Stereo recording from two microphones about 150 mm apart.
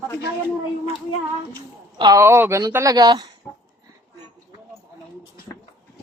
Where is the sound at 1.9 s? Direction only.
30° right (ahead or behind).